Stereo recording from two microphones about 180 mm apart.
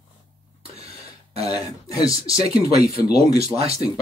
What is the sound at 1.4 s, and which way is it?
Speech, 20° left (ahead or behind).